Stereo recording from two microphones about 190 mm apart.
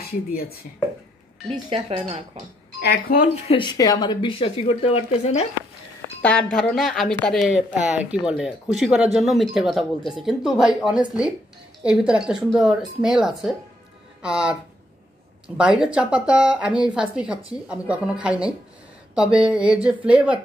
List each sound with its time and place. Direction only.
1.7 s speech: 30° right (ahead or behind)
2.9 s speech: 50° left (ahead or behind)
3.4 s speech: 25° left (ahead or behind)
6.2 s speech: 5° left (ahead or behind)
19.1 s a sound: 5° right (ahead or behind)